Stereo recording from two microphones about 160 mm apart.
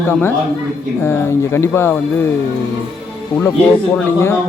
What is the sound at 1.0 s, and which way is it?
A man's voice, 15° left (ahead or behind).